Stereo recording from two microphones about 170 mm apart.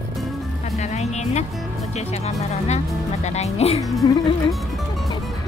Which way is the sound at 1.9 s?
40° left (ahead or behind).